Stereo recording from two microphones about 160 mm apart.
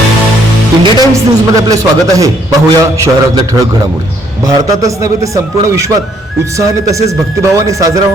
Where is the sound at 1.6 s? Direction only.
20° right (ahead or behind).